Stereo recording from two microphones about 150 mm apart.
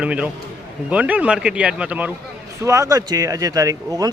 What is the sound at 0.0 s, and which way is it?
Speech, 10° right (ahead or behind).